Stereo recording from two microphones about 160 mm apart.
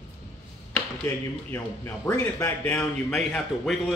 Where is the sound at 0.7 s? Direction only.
15° left (ahead or behind).